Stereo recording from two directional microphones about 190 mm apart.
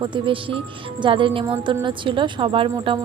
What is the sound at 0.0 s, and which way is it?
Speech, 25° right (ahead or behind).